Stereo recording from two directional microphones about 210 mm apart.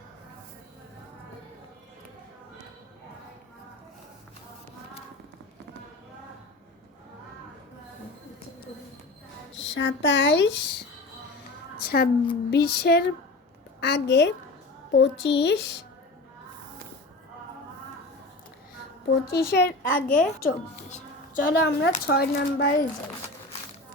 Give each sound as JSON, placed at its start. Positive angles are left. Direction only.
{"t": 9.6, "sound": "a woman's voice", "side_deg": 60}
{"t": 11.9, "sound": "speech", "side_deg": 45}
{"t": 19.3, "sound": "speech", "side_deg": 50}